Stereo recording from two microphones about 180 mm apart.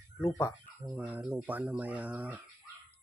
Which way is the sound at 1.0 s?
5° right (ahead or behind).